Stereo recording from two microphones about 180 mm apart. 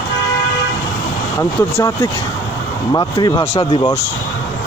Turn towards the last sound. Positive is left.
turn(degrees=25)  # may be behind; listen again after turning